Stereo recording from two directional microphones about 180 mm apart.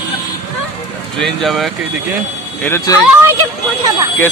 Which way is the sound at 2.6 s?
15° left (ahead or behind).